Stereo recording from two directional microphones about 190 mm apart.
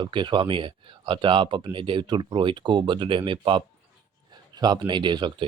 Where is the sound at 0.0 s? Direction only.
25° right (ahead or behind).